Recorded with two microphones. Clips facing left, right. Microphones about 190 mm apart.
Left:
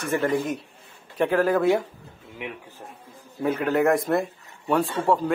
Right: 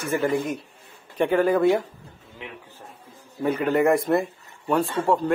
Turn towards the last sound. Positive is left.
turn(degrees=0)  # may be behind; listen again after turning